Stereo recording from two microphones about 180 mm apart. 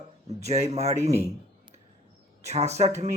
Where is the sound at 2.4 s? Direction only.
40° right (ahead or behind).